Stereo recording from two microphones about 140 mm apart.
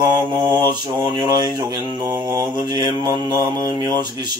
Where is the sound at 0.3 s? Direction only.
30° right (ahead or behind).